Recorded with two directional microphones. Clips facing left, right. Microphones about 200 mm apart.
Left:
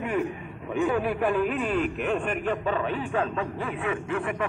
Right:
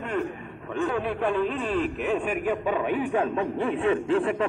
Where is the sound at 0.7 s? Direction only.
5° left (ahead or behind).